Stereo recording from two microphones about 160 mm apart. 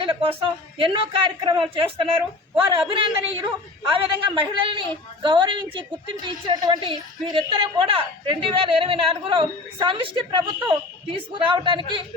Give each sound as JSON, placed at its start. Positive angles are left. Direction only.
{"t": 0.0, "sound": "a woman's voice", "side_deg": -30}